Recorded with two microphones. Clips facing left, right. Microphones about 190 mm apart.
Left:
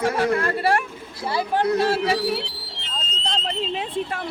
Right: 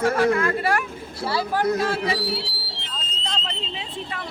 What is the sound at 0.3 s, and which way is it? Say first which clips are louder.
Speech: left 1 dB; 30° left (ahead or behind).